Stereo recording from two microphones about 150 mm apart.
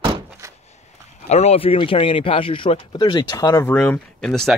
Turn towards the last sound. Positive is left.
turn(degrees=5)  # may be behind; listen again after turning